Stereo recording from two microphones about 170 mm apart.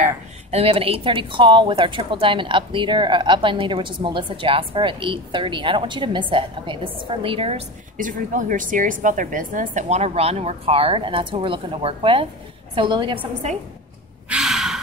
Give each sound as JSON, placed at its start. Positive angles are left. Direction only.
{"t": 0.5, "sound": "a woman's voice", "side_deg": -35}
{"t": 8.0, "sound": "a woman's voice", "side_deg": -50}
{"t": 14.3, "sound": "sigh", "side_deg": 0}